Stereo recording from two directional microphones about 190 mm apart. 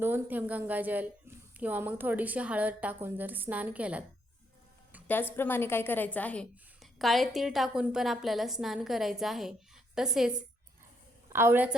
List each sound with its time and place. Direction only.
0.0 s a woman's voice: 10° right (ahead or behind)
5.0 s a woman's voice: 10° left (ahead or behind); by 11.7 s 10° right (ahead or behind)